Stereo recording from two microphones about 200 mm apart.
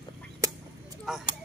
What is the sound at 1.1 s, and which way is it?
Speech, centre (ahead or behind).